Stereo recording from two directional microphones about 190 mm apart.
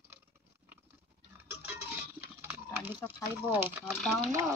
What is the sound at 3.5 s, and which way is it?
Speech, 10° right (ahead or behind).